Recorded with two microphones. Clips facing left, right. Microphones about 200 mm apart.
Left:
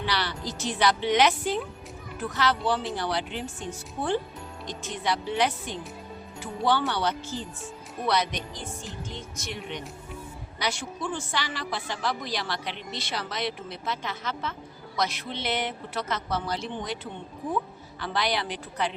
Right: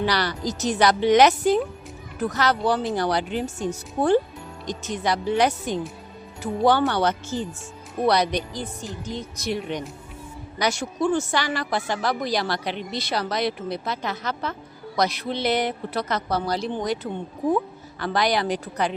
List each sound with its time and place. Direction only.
0.0 s a woman's voice: 40° right (ahead or behind)